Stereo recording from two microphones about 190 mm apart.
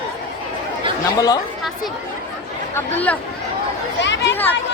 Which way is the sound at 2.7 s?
10° left (ahead or behind).